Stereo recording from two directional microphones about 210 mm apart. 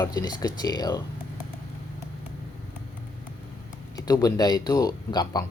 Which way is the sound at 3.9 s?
15° left (ahead or behind).